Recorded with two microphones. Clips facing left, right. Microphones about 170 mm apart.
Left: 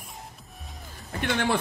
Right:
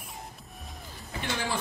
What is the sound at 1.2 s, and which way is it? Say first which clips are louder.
Speech: left 7 dB; 65° left (ahead or behind).